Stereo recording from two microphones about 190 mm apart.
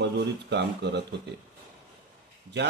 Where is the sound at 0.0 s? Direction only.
65° right (ahead or behind).